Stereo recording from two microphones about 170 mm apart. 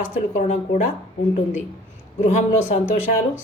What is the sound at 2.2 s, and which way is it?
Speech, 45° left (ahead or behind).